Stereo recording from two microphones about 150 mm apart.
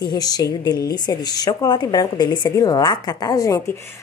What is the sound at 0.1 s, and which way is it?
A woman's voice, 25° left (ahead or behind).